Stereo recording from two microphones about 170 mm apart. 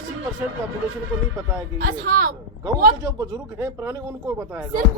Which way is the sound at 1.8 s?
55° right (ahead or behind).